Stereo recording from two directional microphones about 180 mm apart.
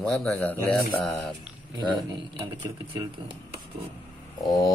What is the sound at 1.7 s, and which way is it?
Mantra, 25° right (ahead or behind).